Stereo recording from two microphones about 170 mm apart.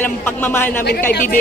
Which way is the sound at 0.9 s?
60° left (ahead or behind).